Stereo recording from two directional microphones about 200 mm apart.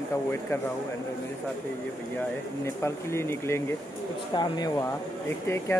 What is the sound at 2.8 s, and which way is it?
Speech, 10° left (ahead or behind).